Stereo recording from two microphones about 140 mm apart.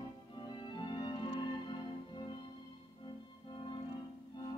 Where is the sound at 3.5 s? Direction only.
35° left (ahead or behind).